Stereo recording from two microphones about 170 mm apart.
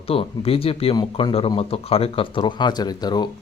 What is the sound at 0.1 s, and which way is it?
Speech, 35° left (ahead or behind).